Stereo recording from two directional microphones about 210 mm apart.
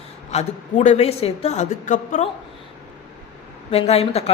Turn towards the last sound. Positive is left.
turn(degrees=30)  # may be behind; listen again after turning